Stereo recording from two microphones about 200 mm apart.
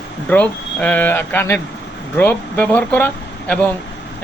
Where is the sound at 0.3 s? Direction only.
10° left (ahead or behind).